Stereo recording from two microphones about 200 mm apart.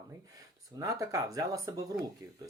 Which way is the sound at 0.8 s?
15° right (ahead or behind).